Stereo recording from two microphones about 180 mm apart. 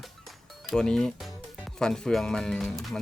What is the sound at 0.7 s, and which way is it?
Speech, 5° left (ahead or behind).